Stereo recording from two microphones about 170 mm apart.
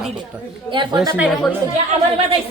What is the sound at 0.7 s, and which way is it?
Speech, 25° right (ahead or behind).